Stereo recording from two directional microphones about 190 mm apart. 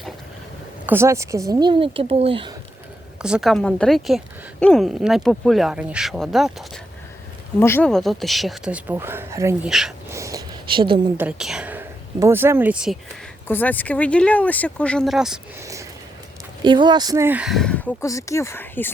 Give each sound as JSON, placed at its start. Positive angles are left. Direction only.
{"t": 0.9, "sound": "speech", "side_deg": -15}
{"t": 3.2, "sound": "speech", "side_deg": -5}
{"t": 7.6, "sound": "speech", "side_deg": 10}
{"t": 9.6, "sound": "speech", "side_deg": 0}
{"t": 10.1, "sound": "a sound", "side_deg": -15}
{"t": 11.2, "sound": "a woman's voice", "side_deg": -5}
{"t": 13.5, "sound": "speech", "side_deg": 10}
{"t": 15.6, "sound": "a sound", "side_deg": -15}
{"t": 16.6, "sound": "speech", "side_deg": -25}